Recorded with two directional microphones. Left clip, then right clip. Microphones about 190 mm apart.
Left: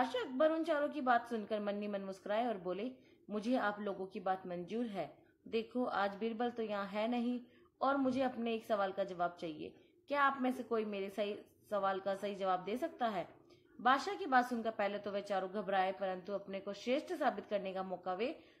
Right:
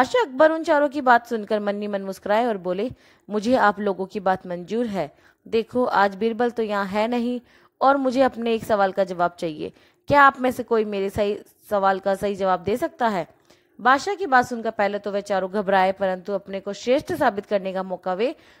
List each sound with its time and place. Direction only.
0.0 s a woman's voice: 45° right (ahead or behind)